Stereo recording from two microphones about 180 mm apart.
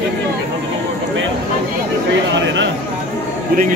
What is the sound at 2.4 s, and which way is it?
Speech, 90° right.